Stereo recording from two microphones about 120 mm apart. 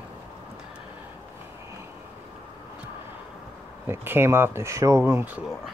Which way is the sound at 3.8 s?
20° right (ahead or behind).